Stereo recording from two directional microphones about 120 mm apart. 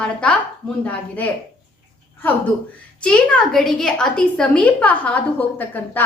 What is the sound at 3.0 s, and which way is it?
A woman's voice, 5° left (ahead or behind).